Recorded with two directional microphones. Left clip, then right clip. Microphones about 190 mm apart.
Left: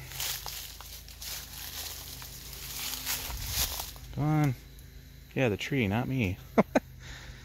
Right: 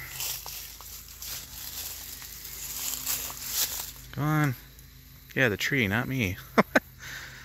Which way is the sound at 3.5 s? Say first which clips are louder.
Right 1 dB; 5° right (ahead or behind).